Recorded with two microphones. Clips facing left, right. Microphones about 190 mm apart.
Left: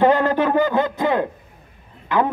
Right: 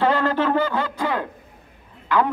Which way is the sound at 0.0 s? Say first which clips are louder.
Left 4 dB; 15° left (ahead or behind).